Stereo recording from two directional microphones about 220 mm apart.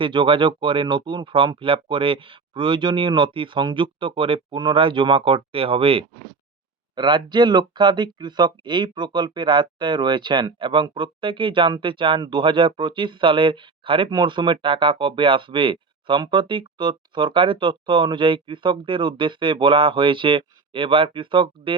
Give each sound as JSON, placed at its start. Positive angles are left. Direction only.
{"t": 0.0, "sound": "speech", "side_deg": -25}